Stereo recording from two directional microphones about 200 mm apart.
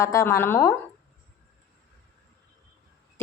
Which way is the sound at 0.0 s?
15° left (ahead or behind).